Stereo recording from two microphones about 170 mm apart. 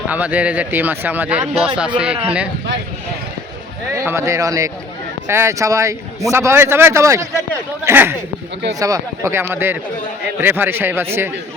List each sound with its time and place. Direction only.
0.1 s a man's voice: 10° right (ahead or behind)
3.9 s a man's voice: 15° right (ahead or behind)